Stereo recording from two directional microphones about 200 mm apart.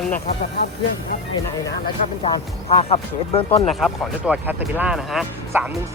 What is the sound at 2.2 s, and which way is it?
Speech, 30° left (ahead or behind).